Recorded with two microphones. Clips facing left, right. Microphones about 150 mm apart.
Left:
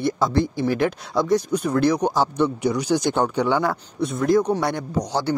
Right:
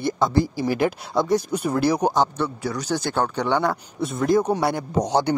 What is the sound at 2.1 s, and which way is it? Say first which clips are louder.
Speech: left 2 dB; 10° left (ahead or behind).